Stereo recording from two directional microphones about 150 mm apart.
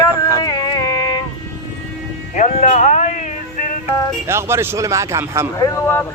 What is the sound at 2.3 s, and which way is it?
Music, 55° left (ahead or behind).